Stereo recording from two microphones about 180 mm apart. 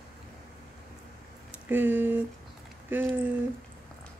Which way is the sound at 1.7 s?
10° right (ahead or behind).